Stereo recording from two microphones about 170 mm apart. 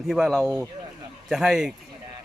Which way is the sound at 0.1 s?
Centre (ahead or behind).